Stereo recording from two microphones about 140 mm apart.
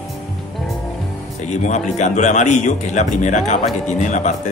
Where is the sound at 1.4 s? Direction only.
60° left (ahead or behind).